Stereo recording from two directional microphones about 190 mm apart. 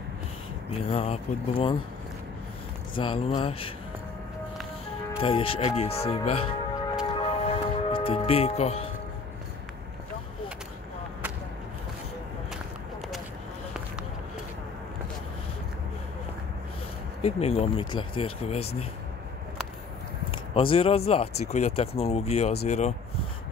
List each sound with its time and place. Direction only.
0.7 s speech: 30° left (ahead or behind)
3.0 s speech: 30° left (ahead or behind)
5.2 s music: 30° left (ahead or behind)
17.2 s speech: 30° left (ahead or behind)
20.2 s speech: 30° left (ahead or behind)